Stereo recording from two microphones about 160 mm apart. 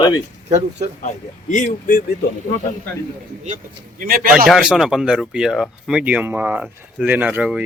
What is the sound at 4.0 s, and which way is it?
Speech, 60° right (ahead or behind).